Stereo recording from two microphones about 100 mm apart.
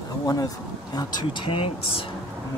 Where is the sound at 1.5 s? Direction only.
70° left (ahead or behind).